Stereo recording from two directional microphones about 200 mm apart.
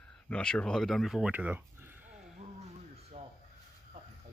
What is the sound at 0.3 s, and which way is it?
Speech, 5° left (ahead or behind).